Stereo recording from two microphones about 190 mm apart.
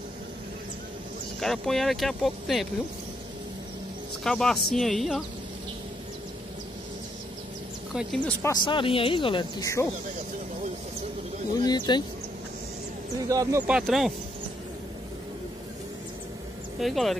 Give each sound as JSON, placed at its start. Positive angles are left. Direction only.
{"t": 1.4, "sound": "speech", "side_deg": 0}
{"t": 4.2, "sound": "speech", "side_deg": 5}
{"t": 7.9, "sound": "a woman's voice", "side_deg": -5}
{"t": 8.4, "sound": "speech", "side_deg": 20}
{"t": 11.5, "sound": "speech", "side_deg": 20}
{"t": 13.3, "sound": "speech", "side_deg": -20}
{"t": 13.7, "sound": "speech", "side_deg": -5}
{"t": 16.8, "sound": "speech", "side_deg": 0}